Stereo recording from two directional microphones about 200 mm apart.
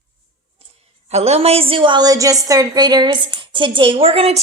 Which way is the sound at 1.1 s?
30° right (ahead or behind).